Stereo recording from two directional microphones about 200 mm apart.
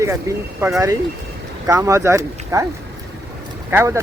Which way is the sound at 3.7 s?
15° right (ahead or behind).